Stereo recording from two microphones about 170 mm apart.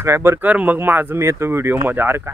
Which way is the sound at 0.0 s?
15° right (ahead or behind).